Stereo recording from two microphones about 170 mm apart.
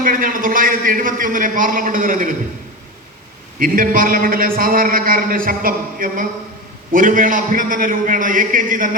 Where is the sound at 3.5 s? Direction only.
55° right (ahead or behind).